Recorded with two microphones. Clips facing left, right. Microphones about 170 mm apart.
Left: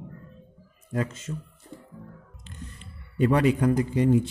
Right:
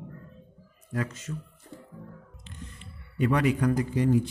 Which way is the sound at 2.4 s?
35° left (ahead or behind).